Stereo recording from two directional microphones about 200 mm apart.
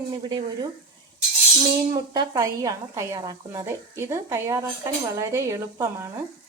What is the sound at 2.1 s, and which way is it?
Speech, 15° right (ahead or behind).